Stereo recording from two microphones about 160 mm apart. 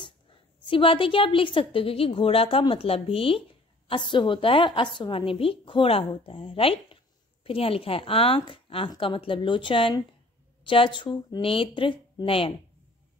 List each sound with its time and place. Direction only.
0.7 s a woman's voice: 30° left (ahead or behind)